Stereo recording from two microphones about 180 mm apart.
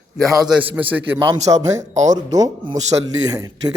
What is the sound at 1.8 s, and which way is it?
Speech, 40° right (ahead or behind).